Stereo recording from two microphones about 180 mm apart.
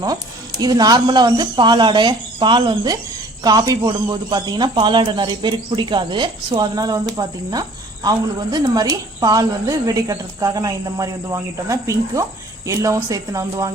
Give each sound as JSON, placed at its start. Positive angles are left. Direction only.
{"t": 0.6, "sound": "speech", "side_deg": -20}
{"t": 8.5, "sound": "speech", "side_deg": -20}